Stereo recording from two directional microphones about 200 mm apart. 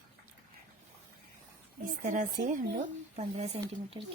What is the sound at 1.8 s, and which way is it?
Speech, 40° right (ahead or behind).